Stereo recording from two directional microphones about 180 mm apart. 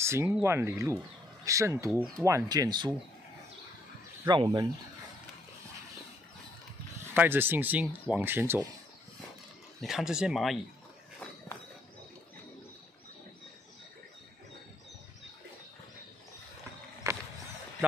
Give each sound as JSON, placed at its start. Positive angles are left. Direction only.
{"t": 0.0, "sound": "speech", "side_deg": -15}
{"t": 4.3, "sound": "speech", "side_deg": -25}
{"t": 7.2, "sound": "speech", "side_deg": -10}
{"t": 9.8, "sound": "speech", "side_deg": 0}
{"t": 17.1, "sound": "a sound", "side_deg": -15}